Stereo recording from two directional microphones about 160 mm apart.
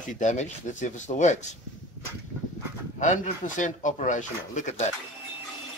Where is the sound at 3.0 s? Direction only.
50° left (ahead or behind).